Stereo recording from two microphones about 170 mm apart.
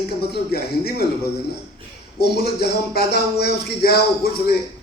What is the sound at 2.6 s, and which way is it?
A man's voice, 70° left (ahead or behind).